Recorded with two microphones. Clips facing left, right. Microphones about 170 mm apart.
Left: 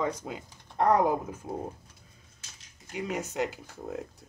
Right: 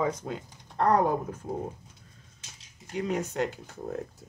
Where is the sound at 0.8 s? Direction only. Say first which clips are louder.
Even; 10° left (ahead or behind).